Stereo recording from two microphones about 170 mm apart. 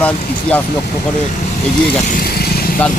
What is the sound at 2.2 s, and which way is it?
Vehicle, 65° left (ahead or behind).